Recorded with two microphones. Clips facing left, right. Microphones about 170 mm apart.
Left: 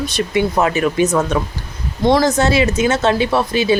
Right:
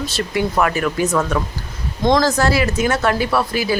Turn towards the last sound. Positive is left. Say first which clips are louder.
# left 3 dB
turn(degrees=25)  # may be behind; listen again after turning